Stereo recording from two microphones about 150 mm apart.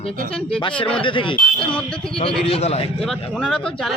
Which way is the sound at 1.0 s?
35° left (ahead or behind).